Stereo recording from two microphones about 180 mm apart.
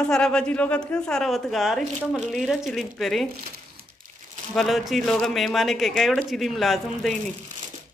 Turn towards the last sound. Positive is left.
turn(degrees=0)  # may be behind; listen again after turning